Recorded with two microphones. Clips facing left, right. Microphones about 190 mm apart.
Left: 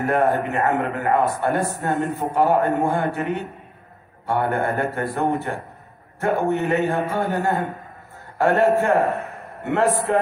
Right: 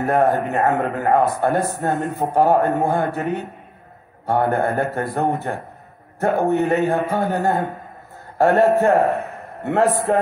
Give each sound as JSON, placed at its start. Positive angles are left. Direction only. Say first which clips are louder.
{"t": 0.0, "sound": "a man's voice", "louder": "right 2 dB", "side_deg": -40}
{"t": 4.3, "sound": "a man's voice", "louder": "right 3 dB", "side_deg": -40}